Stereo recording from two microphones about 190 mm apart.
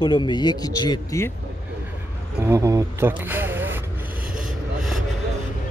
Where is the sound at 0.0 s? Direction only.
25° left (ahead or behind).